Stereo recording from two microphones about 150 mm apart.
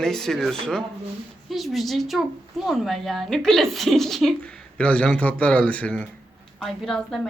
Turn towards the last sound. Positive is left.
turn(degrees=0)  # may be behind; listen again after turning